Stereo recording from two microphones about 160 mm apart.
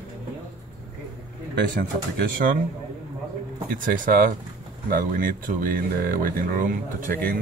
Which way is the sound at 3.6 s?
60° right (ahead or behind).